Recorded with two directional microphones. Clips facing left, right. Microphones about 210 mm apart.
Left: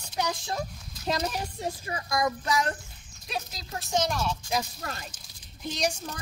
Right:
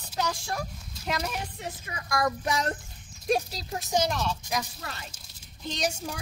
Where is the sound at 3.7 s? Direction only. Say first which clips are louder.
Right 1 dB; 15° right (ahead or behind).